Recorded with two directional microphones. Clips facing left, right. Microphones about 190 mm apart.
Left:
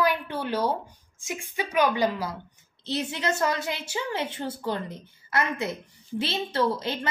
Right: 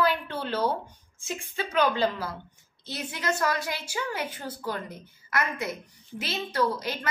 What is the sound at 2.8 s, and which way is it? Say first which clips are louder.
A woman's voice: left 3 dB; 25° left (ahead or behind).